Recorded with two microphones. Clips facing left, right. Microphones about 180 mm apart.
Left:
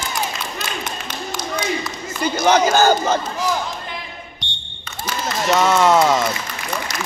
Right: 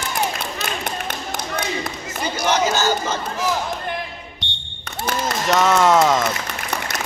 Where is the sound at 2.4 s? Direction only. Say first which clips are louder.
Left 5 dB; 55° left (ahead or behind).